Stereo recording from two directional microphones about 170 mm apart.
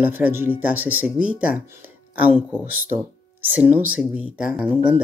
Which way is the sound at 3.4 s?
10° right (ahead or behind).